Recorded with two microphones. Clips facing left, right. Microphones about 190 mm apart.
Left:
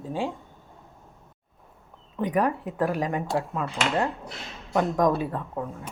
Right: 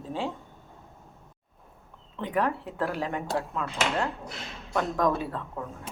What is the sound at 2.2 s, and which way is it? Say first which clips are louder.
Speech: left 3 dB; 15° left (ahead or behind).